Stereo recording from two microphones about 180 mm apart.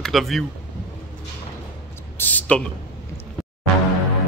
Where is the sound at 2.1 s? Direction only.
10° left (ahead or behind).